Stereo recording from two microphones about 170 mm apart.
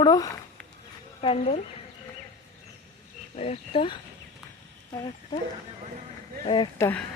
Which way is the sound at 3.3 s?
35° left (ahead or behind).